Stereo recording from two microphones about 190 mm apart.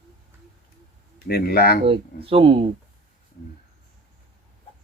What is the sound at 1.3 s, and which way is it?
Speech, 55° left (ahead or behind).